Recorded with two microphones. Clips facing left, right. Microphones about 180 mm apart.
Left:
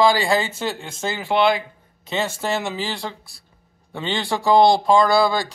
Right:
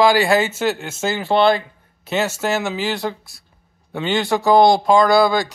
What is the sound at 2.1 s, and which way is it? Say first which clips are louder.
Speech: right 3 dB; 5° right (ahead or behind).